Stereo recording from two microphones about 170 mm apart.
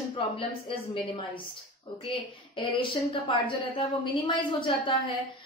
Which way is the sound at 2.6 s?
30° left (ahead or behind).